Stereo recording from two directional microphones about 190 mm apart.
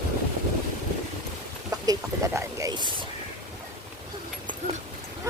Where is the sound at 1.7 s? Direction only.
15° right (ahead or behind).